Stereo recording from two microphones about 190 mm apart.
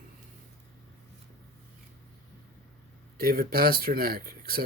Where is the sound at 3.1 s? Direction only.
50° right (ahead or behind).